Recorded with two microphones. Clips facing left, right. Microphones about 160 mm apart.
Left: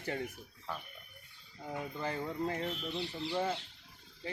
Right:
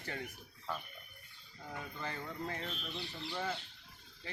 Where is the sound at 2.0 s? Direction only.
30° left (ahead or behind).